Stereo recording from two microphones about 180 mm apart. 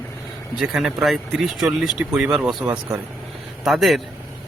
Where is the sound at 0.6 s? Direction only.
Centre (ahead or behind).